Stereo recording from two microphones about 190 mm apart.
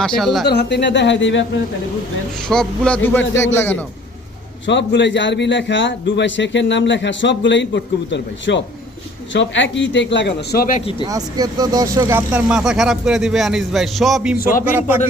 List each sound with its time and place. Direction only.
0.0 s speech: centre (ahead or behind)
0.4 s a man's voice: 65° left (ahead or behind)
2.5 s speech: 5° left (ahead or behind)
4.6 s a man's voice: 70° left (ahead or behind); by 10.8 s 55° left (ahead or behind)
10.8 s speech: 30° left (ahead or behind)
11.1 s speech: 20° right (ahead or behind); by 14.3 s centre (ahead or behind)
14.3 s speech: 50° left (ahead or behind)
14.7 s speech: 10° right (ahead or behind)